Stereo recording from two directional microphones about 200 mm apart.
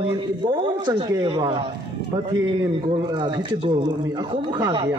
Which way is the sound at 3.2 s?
20° right (ahead or behind).